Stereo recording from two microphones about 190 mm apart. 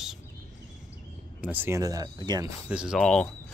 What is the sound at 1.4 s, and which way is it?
Speech, 10° right (ahead or behind).